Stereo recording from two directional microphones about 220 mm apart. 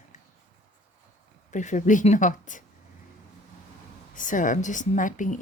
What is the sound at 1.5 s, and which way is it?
Speech, 35° left (ahead or behind).